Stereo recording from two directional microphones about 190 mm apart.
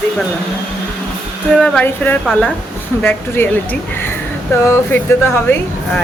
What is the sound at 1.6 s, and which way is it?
Speech, 5° left (ahead or behind).